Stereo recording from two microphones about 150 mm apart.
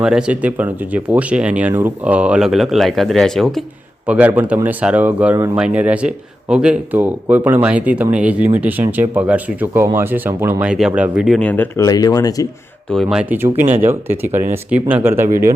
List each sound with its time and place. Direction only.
0.0 s speech: 5° right (ahead or behind)
4.0 s speech: 10° right (ahead or behind)
11.3 s speech: 10° left (ahead or behind)
11.8 s speech: 25° left (ahead or behind)
12.9 s speech: centre (ahead or behind)
13.8 s speech: 15° right (ahead or behind)